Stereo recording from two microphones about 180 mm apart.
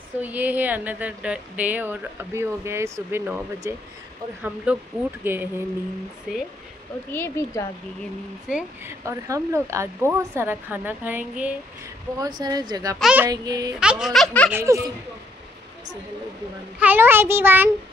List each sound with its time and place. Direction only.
0.2 s speech: 10° right (ahead or behind)
7.1 s speech: 15° left (ahead or behind)
8.5 s speech: 5° right (ahead or behind)
9.0 s speech: 15° right (ahead or behind)
12.2 s a woman's voice: 20° right (ahead or behind)
13.0 s speech: 10° right (ahead or behind)
13.3 s a woman's voice: 20° right (ahead or behind)
13.7 s speech: 5° right (ahead or behind)
14.5 s speech: 15° right (ahead or behind)
16.8 s speech: 10° right (ahead or behind)